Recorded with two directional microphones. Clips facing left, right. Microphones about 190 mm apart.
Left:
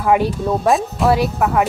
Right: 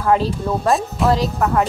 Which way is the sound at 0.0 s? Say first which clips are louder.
Left 1 dB; 10° left (ahead or behind).